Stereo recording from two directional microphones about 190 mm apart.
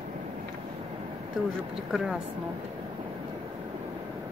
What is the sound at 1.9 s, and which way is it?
Speech, 5° right (ahead or behind).